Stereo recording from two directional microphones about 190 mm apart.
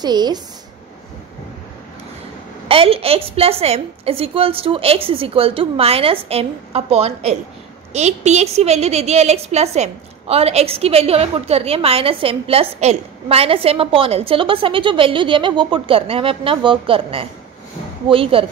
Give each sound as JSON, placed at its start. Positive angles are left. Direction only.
{"t": 0.0, "sound": "a woman's voice", "side_deg": -20}
{"t": 2.7, "sound": "a woman's voice", "side_deg": -30}